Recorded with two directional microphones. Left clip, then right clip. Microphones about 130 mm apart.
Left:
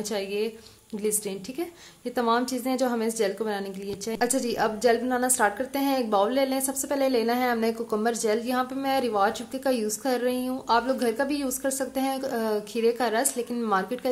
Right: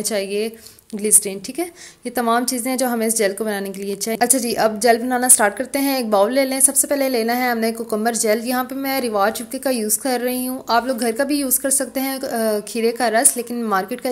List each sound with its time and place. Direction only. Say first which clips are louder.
0.1 s a woman's voice: right 6 dB; 25° right (ahead or behind)